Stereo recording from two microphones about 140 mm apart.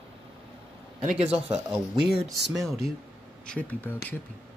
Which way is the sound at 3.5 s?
10° left (ahead or behind).